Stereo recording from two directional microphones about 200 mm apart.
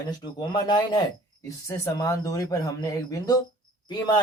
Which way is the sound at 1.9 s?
15° left (ahead or behind).